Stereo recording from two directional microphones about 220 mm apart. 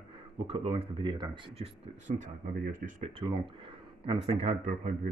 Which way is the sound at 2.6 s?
40° right (ahead or behind).